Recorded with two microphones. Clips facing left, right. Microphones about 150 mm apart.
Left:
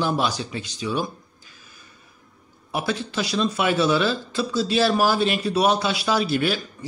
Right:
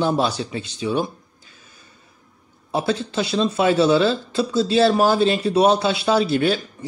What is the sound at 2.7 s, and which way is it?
Speech, 25° right (ahead or behind).